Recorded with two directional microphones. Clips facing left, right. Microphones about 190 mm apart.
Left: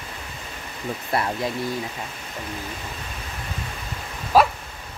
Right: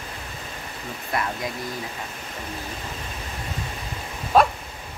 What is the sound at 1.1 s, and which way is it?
Speech, 30° left (ahead or behind).